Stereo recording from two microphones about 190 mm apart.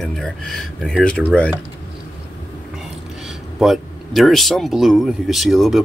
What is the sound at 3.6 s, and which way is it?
Speech, centre (ahead or behind).